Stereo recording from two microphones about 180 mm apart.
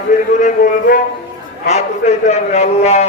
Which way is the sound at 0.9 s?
50° left (ahead or behind).